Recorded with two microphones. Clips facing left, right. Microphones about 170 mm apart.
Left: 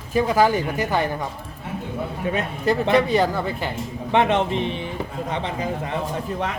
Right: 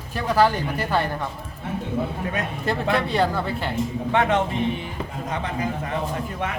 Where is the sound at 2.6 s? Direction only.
15° left (ahead or behind).